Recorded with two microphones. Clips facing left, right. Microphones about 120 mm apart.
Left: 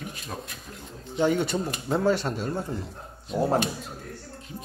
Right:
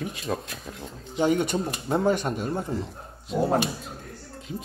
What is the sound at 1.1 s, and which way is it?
Speech, 15° right (ahead or behind).